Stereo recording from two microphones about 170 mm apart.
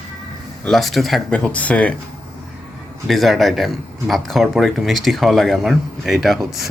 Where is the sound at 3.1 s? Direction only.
Centre (ahead or behind).